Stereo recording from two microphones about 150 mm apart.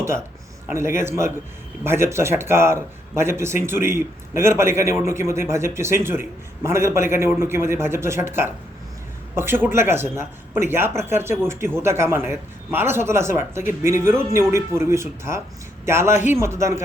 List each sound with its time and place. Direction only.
0.0 s a man's voice: 15° right (ahead or behind)
9.3 s a man's voice: 15° right (ahead or behind)